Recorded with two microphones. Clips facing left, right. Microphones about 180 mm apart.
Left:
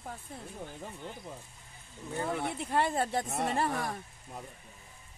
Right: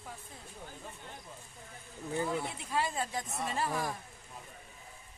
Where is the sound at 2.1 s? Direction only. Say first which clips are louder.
Left 1 dB; 60° left (ahead or behind).